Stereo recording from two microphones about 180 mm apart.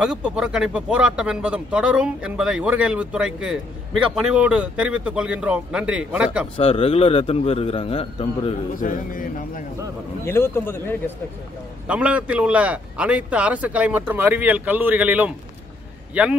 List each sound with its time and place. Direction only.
0.0 s speech: 5° right (ahead or behind)
6.5 s a man's voice: 30° left (ahead or behind)
8.7 s a man's voice: 50° left (ahead or behind)
10.2 s a man's voice: 15° left (ahead or behind)
11.9 s a man's voice: 5° right (ahead or behind)